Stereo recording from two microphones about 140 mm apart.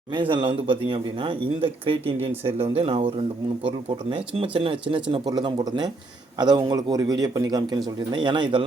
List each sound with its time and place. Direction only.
0.1 s a man's voice: 35° right (ahead or behind)